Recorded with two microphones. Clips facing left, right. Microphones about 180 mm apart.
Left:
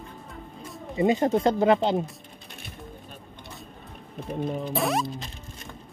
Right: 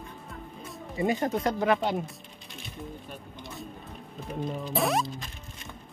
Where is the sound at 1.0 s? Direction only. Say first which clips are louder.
Left 5 dB; 25° left (ahead or behind).